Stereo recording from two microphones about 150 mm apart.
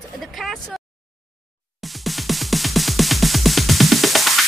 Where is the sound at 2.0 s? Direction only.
Centre (ahead or behind).